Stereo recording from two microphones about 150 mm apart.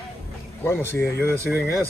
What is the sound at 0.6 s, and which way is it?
Speech, 15° left (ahead or behind).